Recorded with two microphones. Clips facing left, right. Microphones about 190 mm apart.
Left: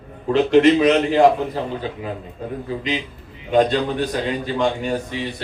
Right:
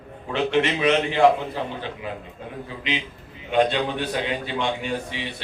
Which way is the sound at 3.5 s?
40° left (ahead or behind).